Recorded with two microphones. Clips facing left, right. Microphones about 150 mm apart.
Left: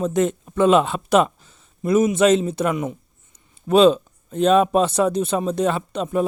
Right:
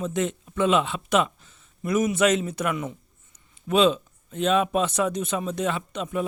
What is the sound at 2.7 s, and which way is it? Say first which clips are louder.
Speech: left 5 dB; 20° left (ahead or behind).